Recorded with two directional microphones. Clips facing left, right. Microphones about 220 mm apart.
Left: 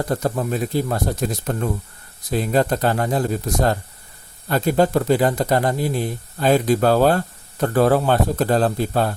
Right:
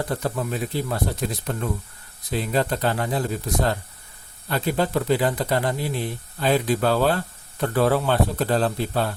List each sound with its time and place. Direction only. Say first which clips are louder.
0.0 s speech: left 4 dB; 45° left (ahead or behind)